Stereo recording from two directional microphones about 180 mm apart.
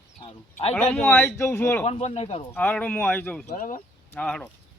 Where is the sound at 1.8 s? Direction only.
35° left (ahead or behind).